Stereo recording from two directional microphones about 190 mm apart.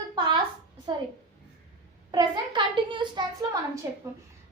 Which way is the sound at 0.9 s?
25° right (ahead or behind).